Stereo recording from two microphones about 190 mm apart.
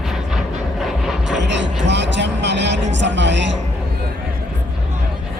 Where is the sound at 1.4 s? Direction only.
65° right (ahead or behind).